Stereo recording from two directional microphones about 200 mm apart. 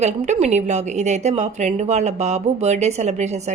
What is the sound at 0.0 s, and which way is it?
Speech, 35° right (ahead or behind).